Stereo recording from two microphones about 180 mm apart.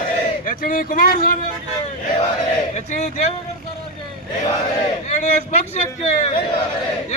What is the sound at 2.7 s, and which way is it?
Speech, 40° left (ahead or behind).